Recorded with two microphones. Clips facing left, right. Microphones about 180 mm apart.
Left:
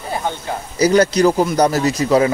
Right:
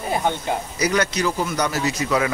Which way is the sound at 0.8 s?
35° left (ahead or behind).